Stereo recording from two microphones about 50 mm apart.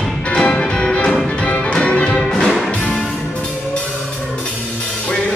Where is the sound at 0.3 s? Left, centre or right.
Centre.